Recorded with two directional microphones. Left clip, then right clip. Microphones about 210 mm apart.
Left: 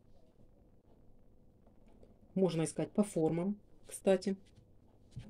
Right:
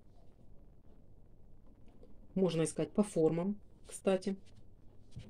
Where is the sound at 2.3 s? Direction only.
5° left (ahead or behind).